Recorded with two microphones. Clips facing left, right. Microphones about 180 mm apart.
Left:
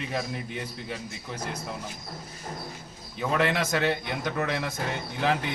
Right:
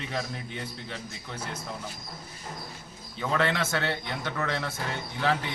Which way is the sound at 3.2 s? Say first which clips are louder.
Left 2 dB; 10° left (ahead or behind).